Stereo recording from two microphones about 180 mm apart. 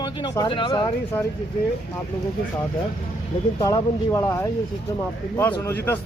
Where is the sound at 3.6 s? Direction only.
15° left (ahead or behind).